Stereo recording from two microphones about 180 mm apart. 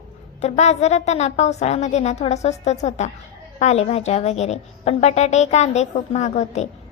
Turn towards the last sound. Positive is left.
turn(degrees=40)  # may be behind; listen again after turning